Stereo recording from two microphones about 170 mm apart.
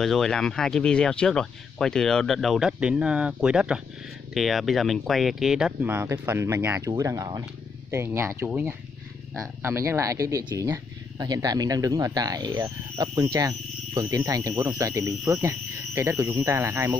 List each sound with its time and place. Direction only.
0.0 s speech: centre (ahead or behind); by 16.9 s 15° right (ahead or behind)